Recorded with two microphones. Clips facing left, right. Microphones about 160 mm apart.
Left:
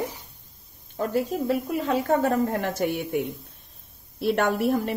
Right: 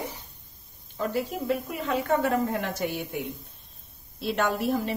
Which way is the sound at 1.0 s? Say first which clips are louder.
Left 4 dB; 35° left (ahead or behind).